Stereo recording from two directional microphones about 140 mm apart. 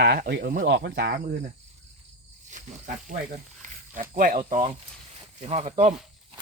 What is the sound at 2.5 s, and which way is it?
Speech, 70° right (ahead or behind).